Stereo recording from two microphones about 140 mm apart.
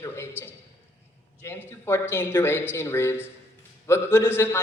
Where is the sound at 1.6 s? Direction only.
15° left (ahead or behind).